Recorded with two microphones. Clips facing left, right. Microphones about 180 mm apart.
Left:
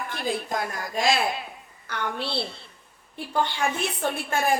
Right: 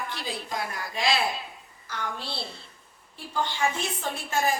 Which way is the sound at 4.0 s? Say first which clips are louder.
Left 2 dB; 60° left (ahead or behind).